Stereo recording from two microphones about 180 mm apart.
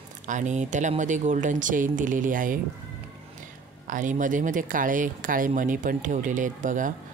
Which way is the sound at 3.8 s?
45° right (ahead or behind).